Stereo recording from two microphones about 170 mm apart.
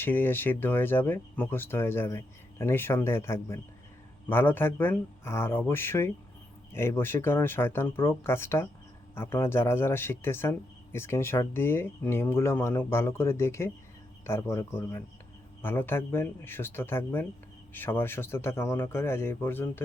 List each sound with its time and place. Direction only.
0.0 s speech: 15° left (ahead or behind)